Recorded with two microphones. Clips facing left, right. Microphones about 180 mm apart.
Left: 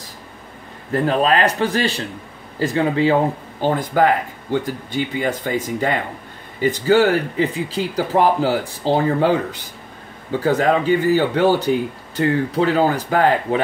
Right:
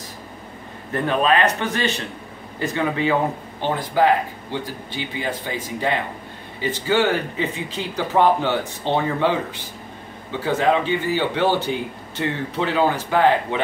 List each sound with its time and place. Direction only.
0.9 s speech: 35° left (ahead or behind)
3.6 s speech: 50° left (ahead or behind)